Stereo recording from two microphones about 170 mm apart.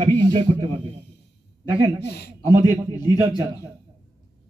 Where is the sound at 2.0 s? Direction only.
75° left (ahead or behind).